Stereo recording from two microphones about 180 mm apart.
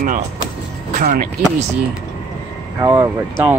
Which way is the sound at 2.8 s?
15° right (ahead or behind).